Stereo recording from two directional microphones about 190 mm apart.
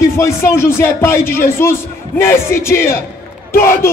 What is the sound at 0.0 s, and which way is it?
A man's voice, 15° left (ahead or behind).